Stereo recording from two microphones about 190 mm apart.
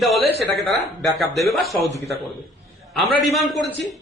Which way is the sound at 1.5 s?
Centre (ahead or behind).